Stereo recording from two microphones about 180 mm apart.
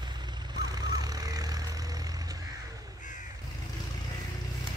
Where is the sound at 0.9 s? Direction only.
20° right (ahead or behind).